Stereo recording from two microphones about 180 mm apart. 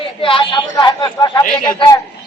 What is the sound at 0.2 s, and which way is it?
A man's voice, 30° left (ahead or behind).